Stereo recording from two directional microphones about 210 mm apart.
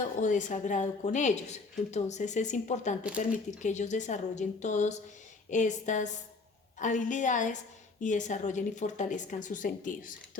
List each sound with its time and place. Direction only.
0.2 s a woman's voice: 35° left (ahead or behind)